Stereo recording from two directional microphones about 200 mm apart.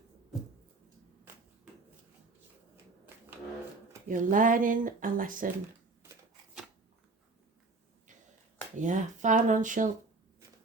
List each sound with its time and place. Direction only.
4.1 s speech: 40° right (ahead or behind)
8.8 s speech: 40° right (ahead or behind)